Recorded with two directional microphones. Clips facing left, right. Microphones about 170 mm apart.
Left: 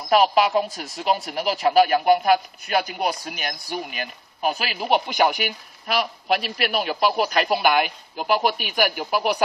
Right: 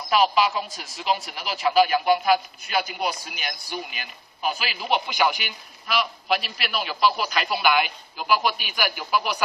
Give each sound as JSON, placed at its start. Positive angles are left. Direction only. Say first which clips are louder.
{"t": 0.1, "sound": "speech", "louder": "left 3 dB", "side_deg": 50}